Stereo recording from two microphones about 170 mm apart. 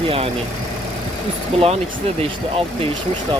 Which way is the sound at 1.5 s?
35° right (ahead or behind).